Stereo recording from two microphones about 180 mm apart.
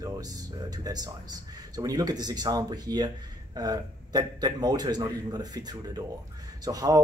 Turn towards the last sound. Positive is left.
turn(degrees=-20)  # may be behind; listen again after turning